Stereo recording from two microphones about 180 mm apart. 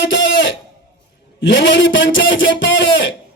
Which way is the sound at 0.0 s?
90° left.